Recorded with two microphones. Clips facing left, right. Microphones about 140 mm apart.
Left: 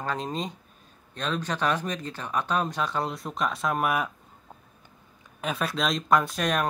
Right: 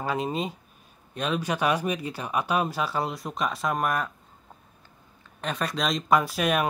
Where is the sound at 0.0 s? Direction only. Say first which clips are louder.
Right 3 dB; 10° right (ahead or behind).